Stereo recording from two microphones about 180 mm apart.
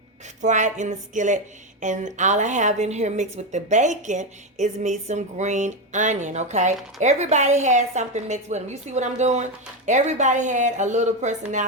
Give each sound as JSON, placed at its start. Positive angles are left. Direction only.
{"t": 0.4, "sound": "a woman's voice", "side_deg": -40}